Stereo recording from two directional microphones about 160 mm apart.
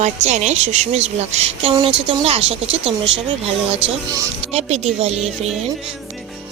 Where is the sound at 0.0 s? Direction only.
45° right (ahead or behind).